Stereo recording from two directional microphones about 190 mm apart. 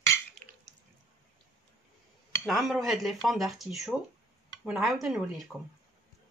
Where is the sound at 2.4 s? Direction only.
Centre (ahead or behind).